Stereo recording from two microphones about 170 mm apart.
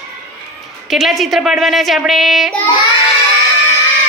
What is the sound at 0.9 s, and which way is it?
Speech, centre (ahead or behind).